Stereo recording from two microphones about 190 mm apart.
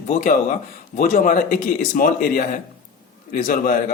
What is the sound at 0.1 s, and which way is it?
A man's voice, 45° left (ahead or behind).